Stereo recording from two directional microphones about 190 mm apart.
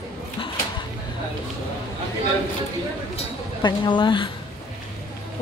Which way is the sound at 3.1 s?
25° left (ahead or behind).